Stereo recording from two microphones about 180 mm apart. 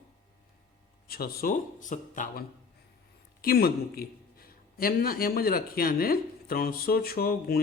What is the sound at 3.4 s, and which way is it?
A man's voice, 60° left (ahead or behind).